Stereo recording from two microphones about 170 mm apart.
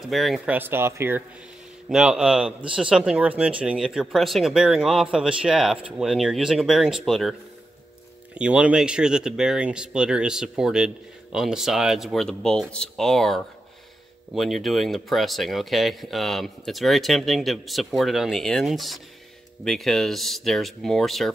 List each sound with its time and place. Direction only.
0.1 s speech: centre (ahead or behind)
0.6 s speech: 15° right (ahead or behind)
8.4 s speech: 5° right (ahead or behind)